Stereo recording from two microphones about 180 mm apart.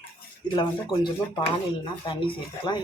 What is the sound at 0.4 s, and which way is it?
Speech, 25° left (ahead or behind).